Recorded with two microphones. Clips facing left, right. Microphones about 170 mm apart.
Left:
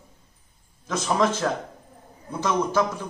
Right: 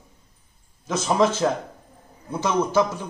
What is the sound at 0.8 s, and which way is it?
Speech, 20° right (ahead or behind).